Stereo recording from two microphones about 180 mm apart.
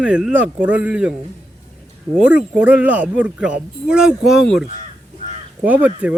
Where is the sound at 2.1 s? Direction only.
10° right (ahead or behind).